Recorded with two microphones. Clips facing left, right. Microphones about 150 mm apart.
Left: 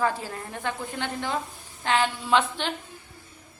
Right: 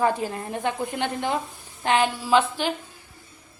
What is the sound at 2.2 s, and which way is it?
Speech, 5° right (ahead or behind).